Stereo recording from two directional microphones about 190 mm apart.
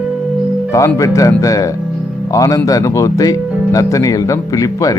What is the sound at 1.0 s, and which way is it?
Speech, 15° left (ahead or behind).